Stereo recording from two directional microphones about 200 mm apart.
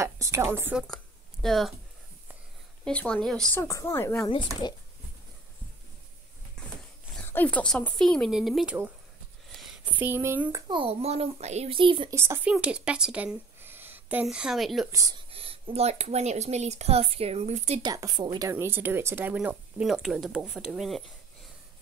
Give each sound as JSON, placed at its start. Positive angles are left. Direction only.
{"t": 0.0, "sound": "a woman's voice", "side_deg": -15}
{"t": 0.8, "sound": "a sound", "side_deg": 0}
{"t": 2.8, "sound": "speech", "side_deg": 5}
{"t": 3.5, "sound": "a woman's voice", "side_deg": 15}
{"t": 6.6, "sound": "a sound", "side_deg": 5}
{"t": 7.2, "sound": "speech", "side_deg": 10}
{"t": 10.7, "sound": "a child's voice", "side_deg": -30}
{"t": 12.2, "sound": "speech", "side_deg": -10}
{"t": 14.9, "sound": "speech", "side_deg": -15}
{"t": 15.3, "sound": "speech", "side_deg": -30}
{"t": 17.8, "sound": "speech", "side_deg": -20}